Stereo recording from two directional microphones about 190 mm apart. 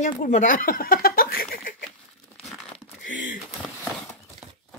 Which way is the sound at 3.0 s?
45° left (ahead or behind).